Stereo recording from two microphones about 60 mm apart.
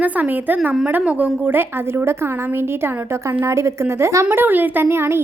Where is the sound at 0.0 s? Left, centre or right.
Right.